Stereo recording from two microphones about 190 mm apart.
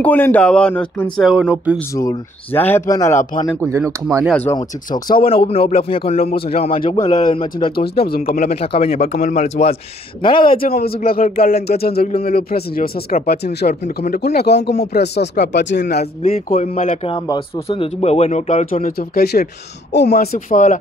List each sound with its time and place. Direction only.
0.0 s speech: 10° left (ahead or behind)
2.0 s speech: 15° left (ahead or behind)
3.6 s speech: 15° right (ahead or behind)
4.3 s speech: 10° left (ahead or behind)
5.1 s speech: 30° left (ahead or behind)
6.3 s speech: 55° left (ahead or behind)
6.6 s speech: 30° left (ahead or behind)
7.2 s speech: 25° left (ahead or behind)
7.7 s speech: 55° left (ahead or behind)
8.4 s speech: 35° left (ahead or behind)
10.6 s speech: 55° left (ahead or behind)
16.2 s speech: 35° left (ahead or behind)
17.1 s speech: 30° left (ahead or behind)